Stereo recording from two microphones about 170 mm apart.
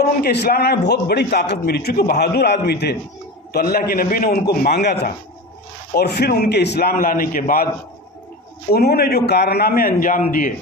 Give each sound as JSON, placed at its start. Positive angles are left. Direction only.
{"t": 0.2, "sound": "a man's voice", "side_deg": 70}
{"t": 8.7, "sound": "a man's voice", "side_deg": 65}